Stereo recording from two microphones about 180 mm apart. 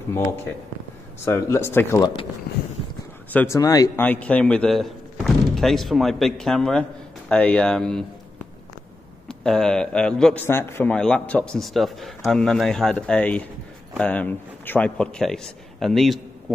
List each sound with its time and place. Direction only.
0.1 s speech: 15° left (ahead or behind)
3.3 s speech: 10° left (ahead or behind)
4.0 s speech: 10° left (ahead or behind)
9.3 s a man's voice: 5° left (ahead or behind)